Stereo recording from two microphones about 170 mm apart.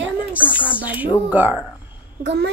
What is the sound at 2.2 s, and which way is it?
Speech, 90° right.